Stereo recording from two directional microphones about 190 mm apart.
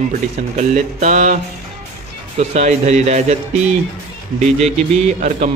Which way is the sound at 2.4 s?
35° right (ahead or behind).